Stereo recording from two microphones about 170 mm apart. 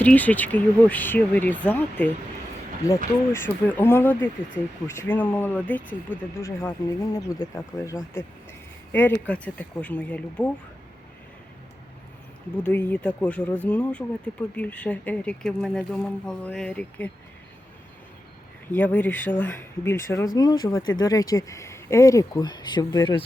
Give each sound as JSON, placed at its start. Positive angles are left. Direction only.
{"t": 0.0, "sound": "speech", "side_deg": 10}
{"t": 12.6, "sound": "speech", "side_deg": 10}
{"t": 18.7, "sound": "speech", "side_deg": 10}